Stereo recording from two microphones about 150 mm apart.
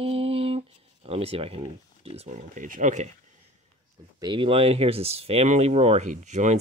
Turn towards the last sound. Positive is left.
turn(degrees=-50)  # may be behind; listen again after turning